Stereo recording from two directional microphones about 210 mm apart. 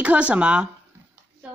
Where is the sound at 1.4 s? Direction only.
5° right (ahead or behind).